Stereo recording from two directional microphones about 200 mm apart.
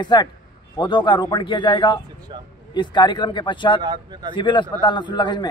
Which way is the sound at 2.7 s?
20° left (ahead or behind).